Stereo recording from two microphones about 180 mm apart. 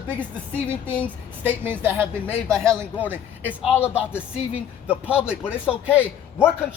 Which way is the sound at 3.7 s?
10° left (ahead or behind).